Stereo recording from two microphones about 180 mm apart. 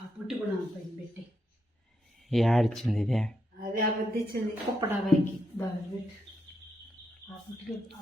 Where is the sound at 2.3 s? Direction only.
Centre (ahead or behind).